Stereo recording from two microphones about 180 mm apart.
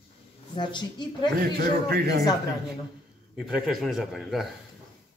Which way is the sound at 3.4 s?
5° right (ahead or behind).